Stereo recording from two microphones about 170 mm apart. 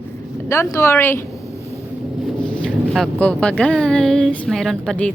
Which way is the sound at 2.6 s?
5° left (ahead or behind).